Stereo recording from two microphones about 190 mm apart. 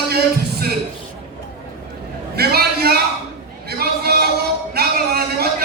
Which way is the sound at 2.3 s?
55° right (ahead or behind).